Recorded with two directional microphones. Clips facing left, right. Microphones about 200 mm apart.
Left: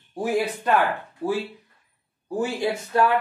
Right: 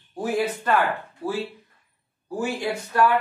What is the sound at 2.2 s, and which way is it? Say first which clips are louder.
Speech: left 2 dB; 20° left (ahead or behind).